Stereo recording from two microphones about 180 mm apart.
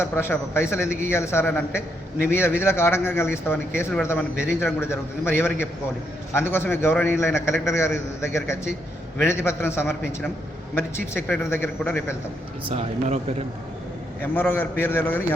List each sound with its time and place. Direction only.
0.0 s a man's voice: 15° left (ahead or behind)
11.3 s a man's voice: 10° left (ahead or behind)
12.6 s speech: 35° right (ahead or behind)
14.2 s a man's voice: 10° left (ahead or behind)